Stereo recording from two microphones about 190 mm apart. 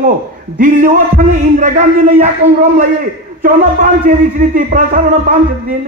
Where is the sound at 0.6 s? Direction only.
45° right (ahead or behind).